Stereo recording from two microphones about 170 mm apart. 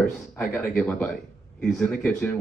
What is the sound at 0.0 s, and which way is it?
Speech, 5° left (ahead or behind).